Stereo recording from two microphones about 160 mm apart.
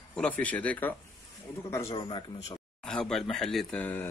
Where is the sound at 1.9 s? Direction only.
30° left (ahead or behind).